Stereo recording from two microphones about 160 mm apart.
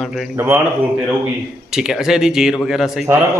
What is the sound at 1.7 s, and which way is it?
A man's voice, 5° right (ahead or behind).